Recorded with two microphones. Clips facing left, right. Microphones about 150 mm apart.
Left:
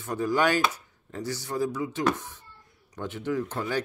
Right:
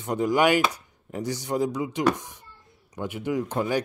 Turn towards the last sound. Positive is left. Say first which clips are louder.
# right 3 dB
turn(degrees=-15)  # may be behind; listen again after turning